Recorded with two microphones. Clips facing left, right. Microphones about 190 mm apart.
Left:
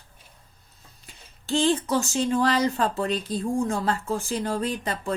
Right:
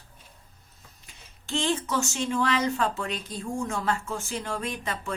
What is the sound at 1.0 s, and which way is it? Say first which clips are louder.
Speech: left 8 dB; 35° left (ahead or behind).